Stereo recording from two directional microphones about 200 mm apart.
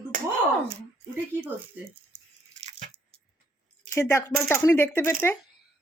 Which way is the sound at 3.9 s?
10° left (ahead or behind).